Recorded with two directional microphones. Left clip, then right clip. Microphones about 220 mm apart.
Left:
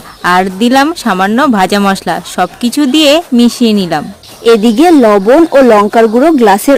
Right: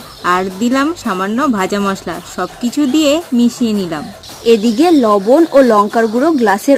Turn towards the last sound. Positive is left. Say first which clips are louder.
# left 5 dB
turn(degrees=35)  # may be behind; listen again after turning